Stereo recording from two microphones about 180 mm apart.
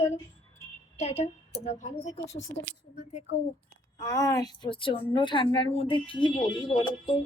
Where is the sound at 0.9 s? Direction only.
35° left (ahead or behind).